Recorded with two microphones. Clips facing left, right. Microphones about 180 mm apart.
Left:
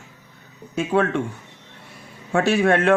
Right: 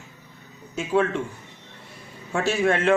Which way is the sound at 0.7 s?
60° left (ahead or behind).